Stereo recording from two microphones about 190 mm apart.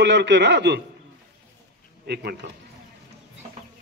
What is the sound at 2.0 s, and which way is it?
Speech, 60° right (ahead or behind).